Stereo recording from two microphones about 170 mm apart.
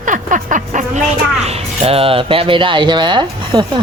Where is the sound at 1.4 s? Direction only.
35° right (ahead or behind).